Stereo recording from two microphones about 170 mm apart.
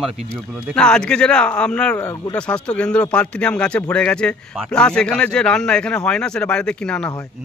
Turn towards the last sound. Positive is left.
turn(degrees=5)  # may be behind; listen again after turning